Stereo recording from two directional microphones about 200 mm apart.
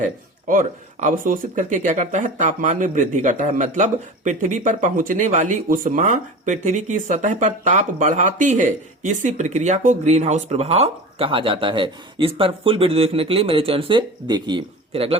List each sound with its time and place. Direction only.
0.4 s speech: 40° right (ahead or behind)